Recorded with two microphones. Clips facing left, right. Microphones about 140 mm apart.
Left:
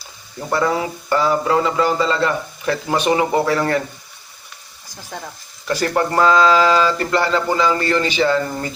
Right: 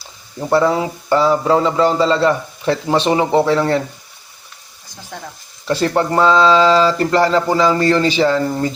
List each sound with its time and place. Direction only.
0.3 s speech: 25° right (ahead or behind)
5.6 s speech: 30° right (ahead or behind)